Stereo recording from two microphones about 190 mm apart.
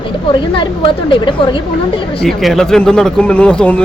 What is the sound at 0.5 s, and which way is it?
Speech, 25° left (ahead or behind).